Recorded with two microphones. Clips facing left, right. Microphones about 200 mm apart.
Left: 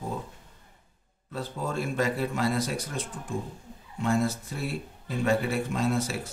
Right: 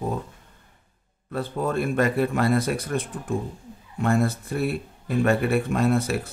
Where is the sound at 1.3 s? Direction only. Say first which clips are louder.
Right 7 dB; 60° right (ahead or behind).